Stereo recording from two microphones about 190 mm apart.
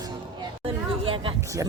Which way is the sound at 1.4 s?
15° right (ahead or behind).